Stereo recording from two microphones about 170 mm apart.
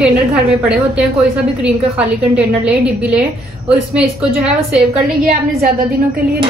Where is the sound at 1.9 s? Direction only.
5° right (ahead or behind).